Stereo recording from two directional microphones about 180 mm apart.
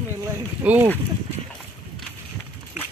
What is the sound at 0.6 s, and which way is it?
Speech, 10° right (ahead or behind).